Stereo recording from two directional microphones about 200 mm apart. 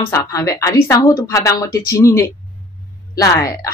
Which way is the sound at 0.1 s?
15° left (ahead or behind).